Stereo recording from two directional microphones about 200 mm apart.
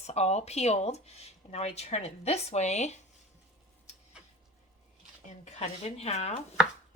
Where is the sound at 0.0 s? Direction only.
35° left (ahead or behind).